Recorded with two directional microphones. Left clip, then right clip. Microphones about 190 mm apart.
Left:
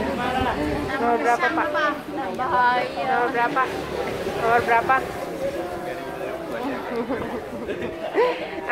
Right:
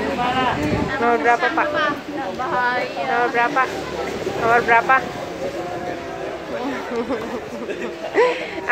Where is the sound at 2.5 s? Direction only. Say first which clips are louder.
Left 1 dB; 50° left (ahead or behind).